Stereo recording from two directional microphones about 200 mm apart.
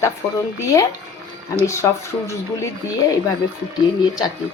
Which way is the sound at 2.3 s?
15° left (ahead or behind).